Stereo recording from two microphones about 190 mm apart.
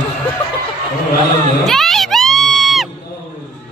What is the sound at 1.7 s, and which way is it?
Goat, centre (ahead or behind).